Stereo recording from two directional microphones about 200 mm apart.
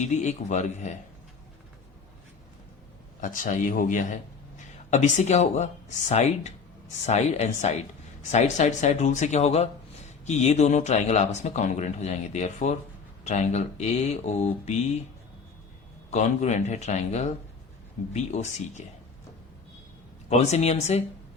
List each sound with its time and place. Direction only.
0.0 s speech: 35° left (ahead or behind)
3.2 s a man's voice: 40° left (ahead or behind)
16.0 s speech: 35° left (ahead or behind)
20.3 s speech: 35° left (ahead or behind)